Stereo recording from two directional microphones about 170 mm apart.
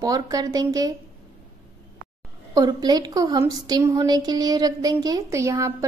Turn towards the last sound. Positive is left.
turn(degrees=-20)  # may be behind; listen again after turning